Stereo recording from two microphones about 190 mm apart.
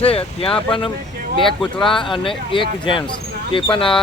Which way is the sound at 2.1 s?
25° left (ahead or behind).